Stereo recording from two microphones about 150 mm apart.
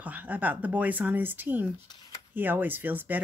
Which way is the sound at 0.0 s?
10° right (ahead or behind).